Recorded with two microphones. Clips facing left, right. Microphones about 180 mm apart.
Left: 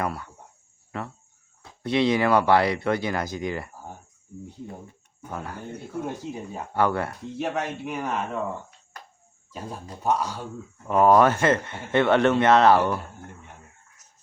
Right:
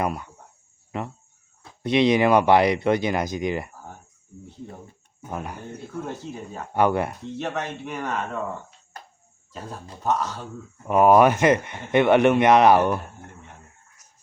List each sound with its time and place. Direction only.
0.0 s speech: 15° right (ahead or behind)
5.3 s speech: 20° right (ahead or behind)
6.1 s speech: 15° left (ahead or behind)
6.7 s speech: 20° right (ahead or behind)
7.3 s speech: 10° left (ahead or behind)
9.5 s speech: 10° left (ahead or behind)
10.8 s speech: 15° right (ahead or behind)
14.0 s a sound: 10° right (ahead or behind)